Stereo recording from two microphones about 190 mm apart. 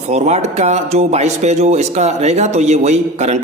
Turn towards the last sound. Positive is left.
turn(degrees=-35)  # may be behind; listen again after turning